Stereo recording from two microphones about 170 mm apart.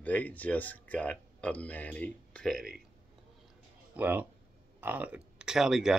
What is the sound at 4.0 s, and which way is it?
Speech, 10° right (ahead or behind).